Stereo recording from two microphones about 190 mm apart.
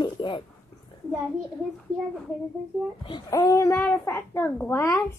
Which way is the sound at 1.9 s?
Centre (ahead or behind).